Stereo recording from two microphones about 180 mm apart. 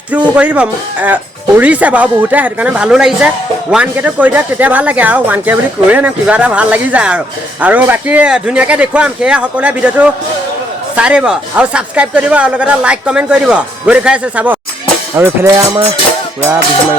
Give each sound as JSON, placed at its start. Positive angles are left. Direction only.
{"t": 0.1, "sound": "speech", "side_deg": -5}